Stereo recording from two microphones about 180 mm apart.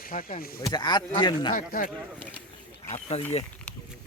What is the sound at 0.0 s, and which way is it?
Speech, 50° left (ahead or behind).